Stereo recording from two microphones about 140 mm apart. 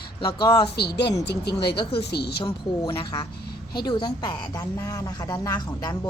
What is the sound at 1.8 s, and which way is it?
A woman's voice, 40° left (ahead or behind).